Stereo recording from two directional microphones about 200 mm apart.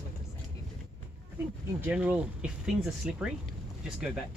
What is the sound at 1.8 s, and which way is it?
Speech, 5° right (ahead or behind).